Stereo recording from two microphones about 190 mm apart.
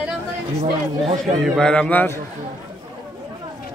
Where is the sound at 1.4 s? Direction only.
5° left (ahead or behind).